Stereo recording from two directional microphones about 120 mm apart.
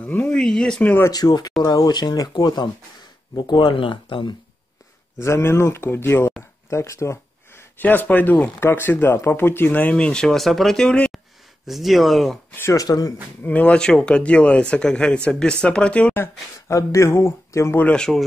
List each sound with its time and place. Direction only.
0.0 s speech: 15° left (ahead or behind)
1.1 s speech: 35° left (ahead or behind)
5.2 s speech: 20° left (ahead or behind); by 12.4 s centre (ahead or behind)
12.5 s speech: 20° left (ahead or behind)
13.4 s speech: 10° left (ahead or behind)
16.6 s speech: 25° left (ahead or behind); by 18.2 s 5° left (ahead or behind)